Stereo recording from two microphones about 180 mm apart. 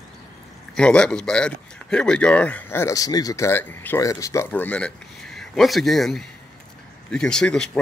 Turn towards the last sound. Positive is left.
turn(degrees=5)  # may be behind; listen again after turning